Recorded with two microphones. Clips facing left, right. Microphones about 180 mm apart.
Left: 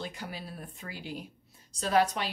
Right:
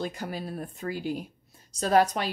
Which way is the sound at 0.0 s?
45° right (ahead or behind).